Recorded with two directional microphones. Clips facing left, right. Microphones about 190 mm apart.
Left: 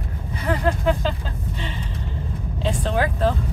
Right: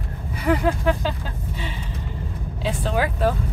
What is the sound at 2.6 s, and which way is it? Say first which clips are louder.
Speech: left 1 dB; 5° right (ahead or behind).